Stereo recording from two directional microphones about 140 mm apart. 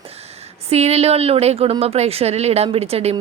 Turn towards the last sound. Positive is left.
turn(degrees=-45)  # may be behind; listen again after turning